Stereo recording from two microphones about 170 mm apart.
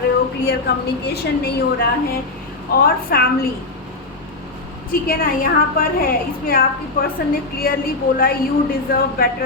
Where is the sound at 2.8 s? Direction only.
65° left (ahead or behind).